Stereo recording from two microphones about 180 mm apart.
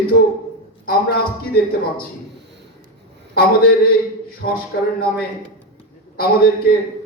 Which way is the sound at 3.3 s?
55° left (ahead or behind).